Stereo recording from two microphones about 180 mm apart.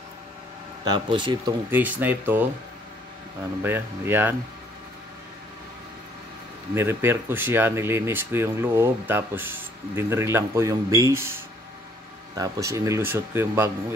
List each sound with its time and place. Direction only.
0.8 s speech: 25° right (ahead or behind)
1.7 s speech: 10° right (ahead or behind)
3.6 s speech: 10° right (ahead or behind)
6.7 s speech: 15° right (ahead or behind)
12.4 s speech: 20° right (ahead or behind)